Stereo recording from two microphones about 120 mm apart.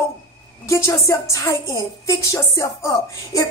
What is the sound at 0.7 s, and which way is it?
A woman's voice, 25° left (ahead or behind).